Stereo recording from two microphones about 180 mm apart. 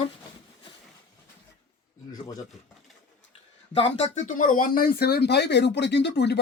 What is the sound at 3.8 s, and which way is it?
Speech, 40° left (ahead or behind).